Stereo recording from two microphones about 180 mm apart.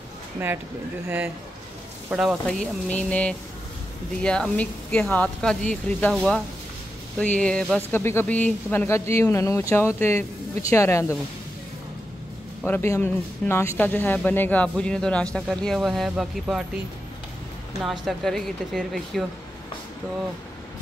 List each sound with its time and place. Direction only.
1.0 s speech: 10° right (ahead or behind); by 11.1 s 15° left (ahead or behind)
12.6 s speech: 15° left (ahead or behind)
17.8 s speech: centre (ahead or behind)